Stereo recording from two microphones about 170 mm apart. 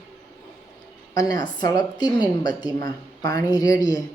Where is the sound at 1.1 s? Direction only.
20° left (ahead or behind).